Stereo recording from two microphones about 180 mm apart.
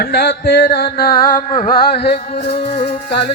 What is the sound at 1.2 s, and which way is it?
Music, 45° left (ahead or behind).